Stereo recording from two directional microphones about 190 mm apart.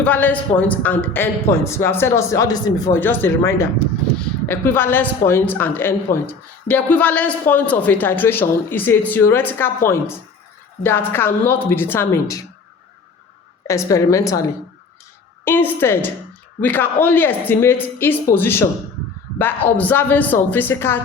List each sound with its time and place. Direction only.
0.0 s a man's voice: 10° left (ahead or behind)
13.7 s a man's voice: 15° left (ahead or behind)
15.4 s a man's voice: 10° left (ahead or behind)